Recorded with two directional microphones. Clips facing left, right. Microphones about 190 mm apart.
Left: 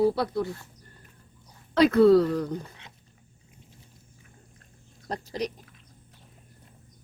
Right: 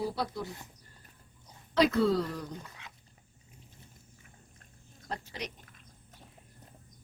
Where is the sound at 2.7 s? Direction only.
30° left (ahead or behind).